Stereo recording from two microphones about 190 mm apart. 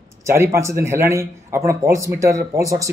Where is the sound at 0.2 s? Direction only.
15° right (ahead or behind).